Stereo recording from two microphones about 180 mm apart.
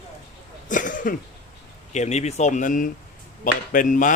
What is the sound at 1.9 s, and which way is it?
Speech, 40° left (ahead or behind).